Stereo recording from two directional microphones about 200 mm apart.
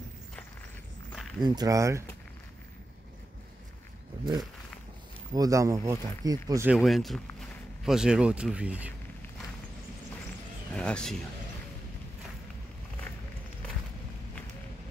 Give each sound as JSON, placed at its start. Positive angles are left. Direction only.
{"t": 1.4, "sound": "speech", "side_deg": -20}
{"t": 5.3, "sound": "speech", "side_deg": -15}
{"t": 10.7, "sound": "speech", "side_deg": 5}